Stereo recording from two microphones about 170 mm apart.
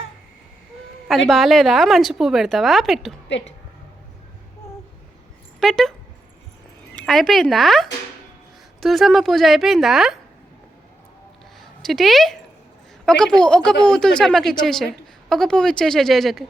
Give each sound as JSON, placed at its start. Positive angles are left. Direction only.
{"t": 1.3, "sound": "a woman's voice", "side_deg": 0}
{"t": 3.2, "sound": "a woman's voice", "side_deg": 90}
{"t": 5.5, "sound": "speech", "side_deg": 0}
{"t": 6.9, "sound": "a woman's voice", "side_deg": 0}
{"t": 11.8, "sound": "a woman's voice", "side_deg": 0}